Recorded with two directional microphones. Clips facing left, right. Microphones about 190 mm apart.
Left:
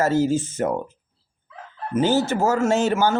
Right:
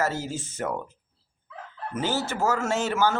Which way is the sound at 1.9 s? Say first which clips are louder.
Left 9 dB; 20° left (ahead or behind).